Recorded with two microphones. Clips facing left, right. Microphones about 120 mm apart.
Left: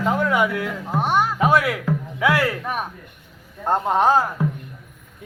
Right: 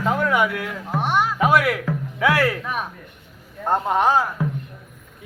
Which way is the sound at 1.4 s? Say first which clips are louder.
Even; 30° left (ahead or behind).